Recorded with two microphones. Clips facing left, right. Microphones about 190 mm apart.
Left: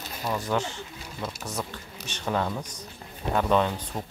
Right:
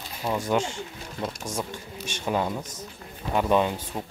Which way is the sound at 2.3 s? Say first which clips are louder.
Right 1 dB; 15° right (ahead or behind).